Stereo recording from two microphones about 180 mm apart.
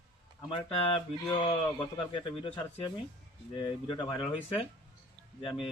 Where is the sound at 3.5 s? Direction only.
25° left (ahead or behind).